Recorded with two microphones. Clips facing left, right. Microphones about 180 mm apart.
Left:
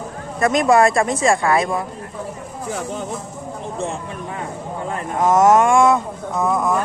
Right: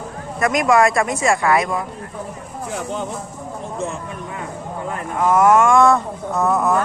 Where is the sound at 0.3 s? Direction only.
30° left (ahead or behind).